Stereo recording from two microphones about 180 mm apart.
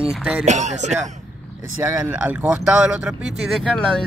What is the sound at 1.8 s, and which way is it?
Speech, 15° right (ahead or behind).